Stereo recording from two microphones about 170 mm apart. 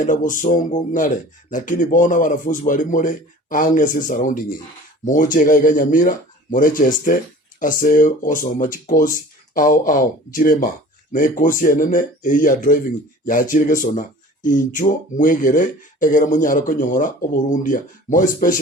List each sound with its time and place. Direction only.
0.0 s speech: 50° left (ahead or behind)